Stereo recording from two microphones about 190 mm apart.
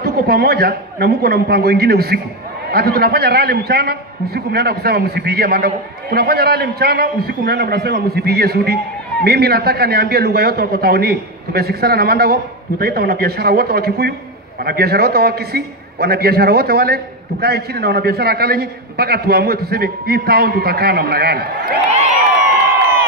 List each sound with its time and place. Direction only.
0.0 s a man's voice: 55° right (ahead or behind)